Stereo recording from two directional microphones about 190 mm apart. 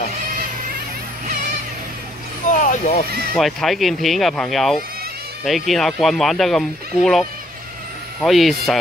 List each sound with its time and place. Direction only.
2.5 s vehicle: 45° left (ahead or behind)
3.3 s speech: centre (ahead or behind)